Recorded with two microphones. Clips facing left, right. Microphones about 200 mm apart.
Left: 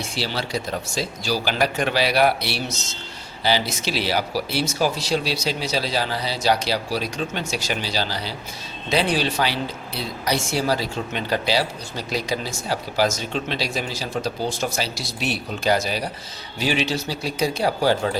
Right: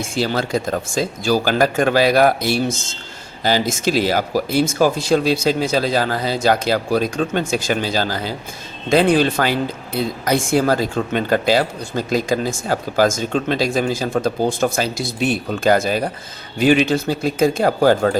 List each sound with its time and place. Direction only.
0.0 s speech: 50° right (ahead or behind)